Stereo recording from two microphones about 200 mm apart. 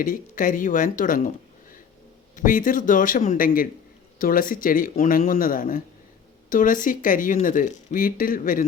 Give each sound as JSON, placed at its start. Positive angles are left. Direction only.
{"t": 0.0, "sound": "speech", "side_deg": 45}
{"t": 2.3, "sound": "speech", "side_deg": 40}